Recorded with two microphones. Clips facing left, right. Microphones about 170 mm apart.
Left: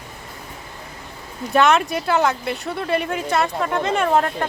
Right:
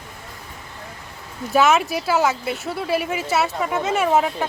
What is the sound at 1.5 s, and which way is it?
Speech, 5° right (ahead or behind).